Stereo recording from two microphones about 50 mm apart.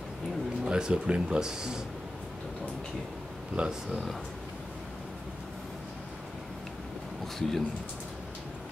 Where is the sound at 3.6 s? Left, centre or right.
Right.